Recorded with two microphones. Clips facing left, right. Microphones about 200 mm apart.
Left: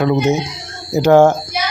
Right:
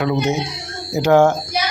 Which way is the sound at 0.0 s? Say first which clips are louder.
Left 4 dB; 40° left (ahead or behind).